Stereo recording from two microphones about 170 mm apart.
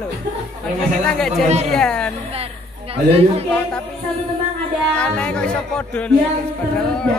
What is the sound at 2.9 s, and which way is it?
Speech, 35° right (ahead or behind).